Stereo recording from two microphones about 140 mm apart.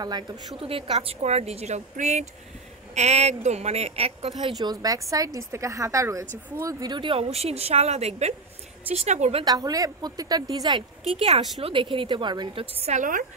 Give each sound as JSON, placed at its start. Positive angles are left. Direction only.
{"t": 0.0, "sound": "a woman's voice", "side_deg": -30}
{"t": 0.6, "sound": "a woman's voice", "side_deg": -40}
{"t": 1.2, "sound": "a woman's voice", "side_deg": -50}
{"t": 4.6, "sound": "a woman's voice", "side_deg": -25}
{"t": 9.4, "sound": "a woman's voice", "side_deg": -25}
{"t": 11.1, "sound": "a woman's voice", "side_deg": -50}
{"t": 11.6, "sound": "a woman's voice", "side_deg": -40}
{"t": 12.8, "sound": "a woman's voice", "side_deg": -65}